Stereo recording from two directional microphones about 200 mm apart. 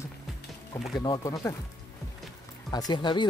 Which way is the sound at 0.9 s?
20° left (ahead or behind).